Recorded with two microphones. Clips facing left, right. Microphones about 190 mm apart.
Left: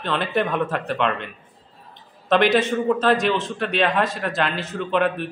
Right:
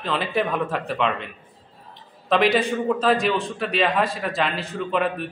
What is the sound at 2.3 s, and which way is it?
A man's voice, centre (ahead or behind).